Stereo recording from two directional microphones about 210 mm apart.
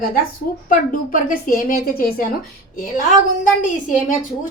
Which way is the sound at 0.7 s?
40° left (ahead or behind).